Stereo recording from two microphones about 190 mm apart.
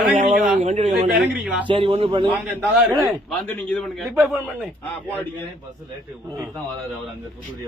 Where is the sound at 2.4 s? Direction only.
5° right (ahead or behind).